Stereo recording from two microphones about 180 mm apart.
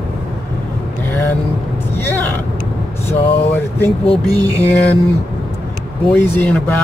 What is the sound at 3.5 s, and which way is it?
Speech, 10° left (ahead or behind).